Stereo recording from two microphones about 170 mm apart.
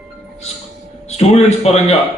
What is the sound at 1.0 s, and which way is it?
Speech, 40° left (ahead or behind).